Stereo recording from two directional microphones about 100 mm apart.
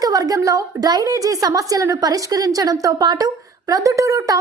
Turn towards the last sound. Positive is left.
turn(degrees=-35)  # may be behind; listen again after turning